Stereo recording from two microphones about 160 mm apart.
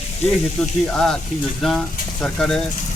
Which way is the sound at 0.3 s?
5° left (ahead or behind).